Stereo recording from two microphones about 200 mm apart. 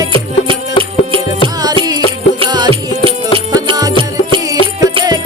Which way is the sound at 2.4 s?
25° right (ahead or behind).